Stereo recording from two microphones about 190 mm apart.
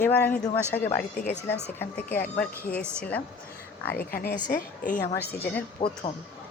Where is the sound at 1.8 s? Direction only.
10° left (ahead or behind).